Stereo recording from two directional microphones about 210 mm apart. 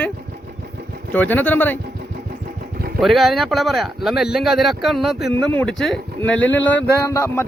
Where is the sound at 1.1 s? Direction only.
10° left (ahead or behind).